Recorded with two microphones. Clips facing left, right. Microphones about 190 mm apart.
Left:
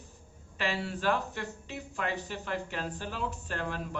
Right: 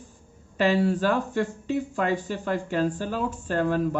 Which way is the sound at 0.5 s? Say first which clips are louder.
Right 12 dB; 40° right (ahead or behind).